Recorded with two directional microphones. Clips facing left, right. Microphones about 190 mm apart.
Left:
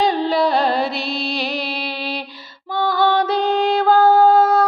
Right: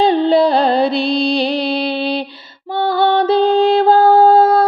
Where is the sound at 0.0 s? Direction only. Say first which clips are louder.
Right 6 dB; 30° right (ahead or behind).